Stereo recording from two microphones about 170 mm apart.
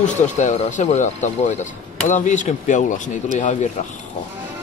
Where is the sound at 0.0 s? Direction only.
45° left (ahead or behind).